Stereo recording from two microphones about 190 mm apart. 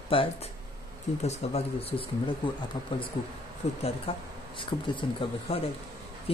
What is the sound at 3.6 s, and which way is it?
Speech, 35° left (ahead or behind).